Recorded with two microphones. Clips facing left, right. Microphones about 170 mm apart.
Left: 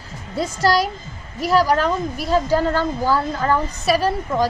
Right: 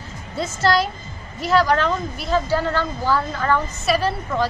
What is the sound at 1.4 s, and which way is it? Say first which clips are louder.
Speech: left 1 dB; 10° left (ahead or behind).